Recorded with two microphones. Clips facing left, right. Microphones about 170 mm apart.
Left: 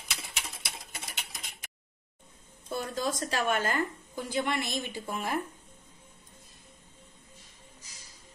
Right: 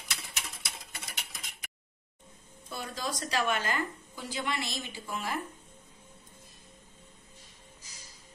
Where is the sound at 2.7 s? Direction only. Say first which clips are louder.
Left 5 dB; 45° left (ahead or behind).